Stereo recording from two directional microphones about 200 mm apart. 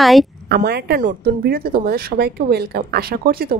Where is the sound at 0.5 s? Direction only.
55° right (ahead or behind).